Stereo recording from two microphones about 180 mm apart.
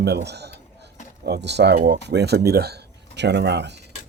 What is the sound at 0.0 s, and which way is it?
A man's voice, 65° right (ahead or behind).